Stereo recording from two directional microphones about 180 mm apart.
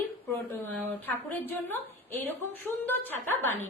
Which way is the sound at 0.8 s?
10° left (ahead or behind).